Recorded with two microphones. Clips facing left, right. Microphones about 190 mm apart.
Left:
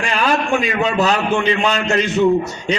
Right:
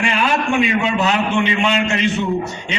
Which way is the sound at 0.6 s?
40° left (ahead or behind).